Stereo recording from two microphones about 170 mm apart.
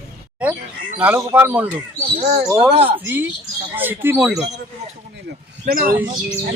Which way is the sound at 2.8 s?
30° right (ahead or behind).